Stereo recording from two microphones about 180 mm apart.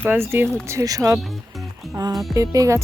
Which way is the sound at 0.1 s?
10° right (ahead or behind).